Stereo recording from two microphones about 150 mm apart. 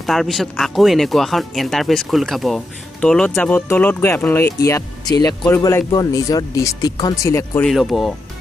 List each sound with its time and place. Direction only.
0.0 s speech: centre (ahead or behind); by 7.6 s 20° left (ahead or behind)
7.6 s speech: centre (ahead or behind)